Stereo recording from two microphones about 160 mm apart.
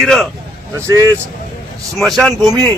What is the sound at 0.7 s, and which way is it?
Speech, 20° right (ahead or behind).